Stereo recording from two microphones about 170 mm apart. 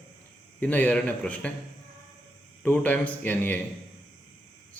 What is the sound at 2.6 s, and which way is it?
Speech, 10° left (ahead or behind).